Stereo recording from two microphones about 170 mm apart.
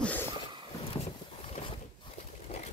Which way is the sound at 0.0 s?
10° left (ahead or behind).